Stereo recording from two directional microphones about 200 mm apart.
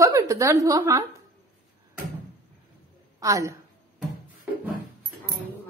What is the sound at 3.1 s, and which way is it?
Speech, 15° right (ahead or behind).